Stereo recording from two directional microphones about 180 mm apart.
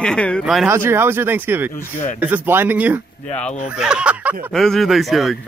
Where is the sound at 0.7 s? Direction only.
15° right (ahead or behind).